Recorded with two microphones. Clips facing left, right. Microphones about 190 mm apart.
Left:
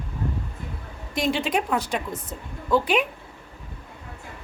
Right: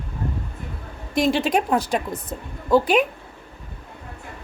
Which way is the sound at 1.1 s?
40° right (ahead or behind).